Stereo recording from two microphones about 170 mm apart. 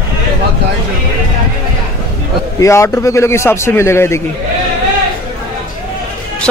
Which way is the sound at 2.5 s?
15° left (ahead or behind).